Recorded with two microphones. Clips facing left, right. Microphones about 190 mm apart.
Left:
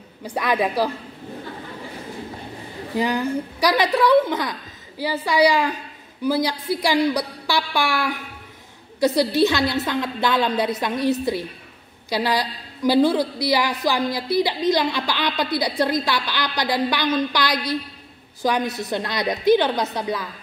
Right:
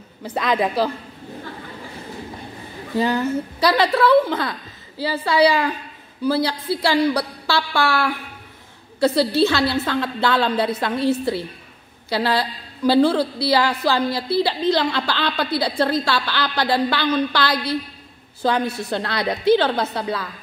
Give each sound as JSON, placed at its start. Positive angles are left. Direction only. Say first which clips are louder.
{"t": 0.2, "sound": "a woman's voice", "louder": "right 1 dB", "side_deg": 10}
{"t": 3.0, "sound": "a woman's voice", "louder": "right 2 dB", "side_deg": 15}